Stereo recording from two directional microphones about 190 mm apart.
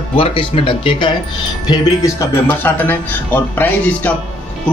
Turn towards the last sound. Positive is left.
turn(degrees=10)  # may be behind; listen again after turning